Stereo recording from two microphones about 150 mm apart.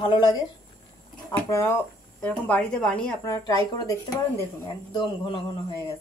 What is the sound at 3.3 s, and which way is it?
Speech, 20° left (ahead or behind).